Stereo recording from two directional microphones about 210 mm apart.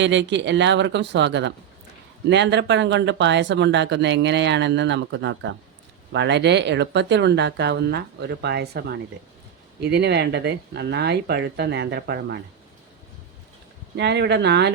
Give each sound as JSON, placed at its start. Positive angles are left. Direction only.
{"t": 0.0, "sound": "speech", "side_deg": -60}
{"t": 13.9, "sound": "speech", "side_deg": -55}